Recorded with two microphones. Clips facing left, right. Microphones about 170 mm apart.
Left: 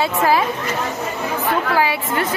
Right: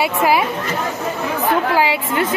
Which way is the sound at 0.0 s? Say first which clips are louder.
Right 1 dB; 10° right (ahead or behind).